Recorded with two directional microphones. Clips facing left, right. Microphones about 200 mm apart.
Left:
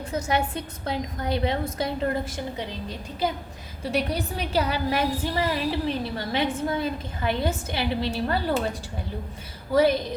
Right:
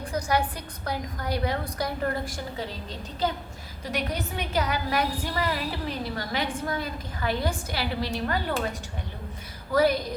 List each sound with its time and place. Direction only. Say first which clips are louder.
0.1 s a woman's voice: left 1 dB; 25° left (ahead or behind)
2.9 s a woman's voice: left 1 dB; 10° left (ahead or behind)
3.9 s a woman's voice: left 3 dB; 30° left (ahead or behind)
9.7 s a woman's voice: left 2 dB; 25° left (ahead or behind)